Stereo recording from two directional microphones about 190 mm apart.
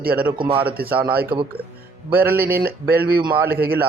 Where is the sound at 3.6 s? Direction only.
55° right (ahead or behind).